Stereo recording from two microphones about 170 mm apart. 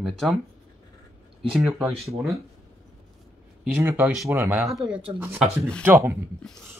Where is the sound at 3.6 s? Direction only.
10° right (ahead or behind).